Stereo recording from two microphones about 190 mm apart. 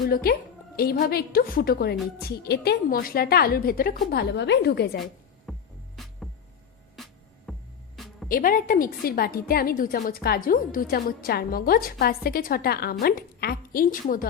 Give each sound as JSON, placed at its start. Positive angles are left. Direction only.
{"t": 0.1, "sound": "a woman's voice", "side_deg": 55}
{"t": 5.5, "sound": "music", "side_deg": 0}
{"t": 8.3, "sound": "a woman's voice", "side_deg": 45}